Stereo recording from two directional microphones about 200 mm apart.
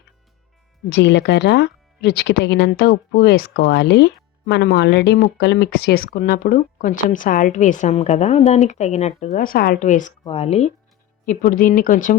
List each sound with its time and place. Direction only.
0.9 s speech: 60° left (ahead or behind); by 10.7 s 30° left (ahead or behind)
11.3 s speech: 45° left (ahead or behind)